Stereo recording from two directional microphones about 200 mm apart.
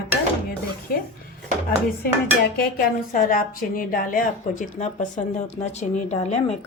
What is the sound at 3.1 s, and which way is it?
A woman's voice, 45° left (ahead or behind).